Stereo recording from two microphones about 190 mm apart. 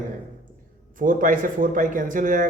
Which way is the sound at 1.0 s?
45° right (ahead or behind).